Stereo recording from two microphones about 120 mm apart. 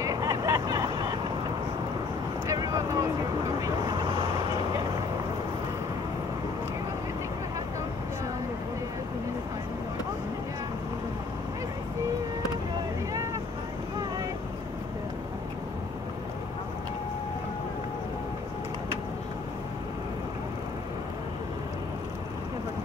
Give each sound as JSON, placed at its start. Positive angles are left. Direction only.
{"t": 0.0, "sound": "vehicle", "side_deg": -30}
{"t": 2.5, "sound": "vehicle", "side_deg": -30}